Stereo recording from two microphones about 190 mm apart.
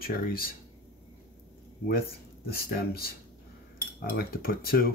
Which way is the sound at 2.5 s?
55° left (ahead or behind).